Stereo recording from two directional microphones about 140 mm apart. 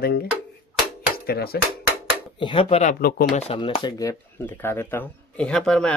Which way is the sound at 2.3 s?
35° left (ahead or behind).